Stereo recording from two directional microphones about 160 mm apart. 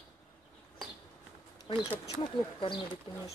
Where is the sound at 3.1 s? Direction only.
30° left (ahead or behind).